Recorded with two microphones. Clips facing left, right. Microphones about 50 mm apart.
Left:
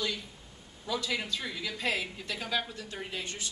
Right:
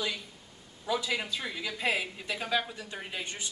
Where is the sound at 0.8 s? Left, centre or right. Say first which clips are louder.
Right 2 dB; centre.